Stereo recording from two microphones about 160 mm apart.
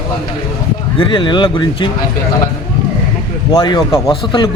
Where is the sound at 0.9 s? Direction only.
30° left (ahead or behind).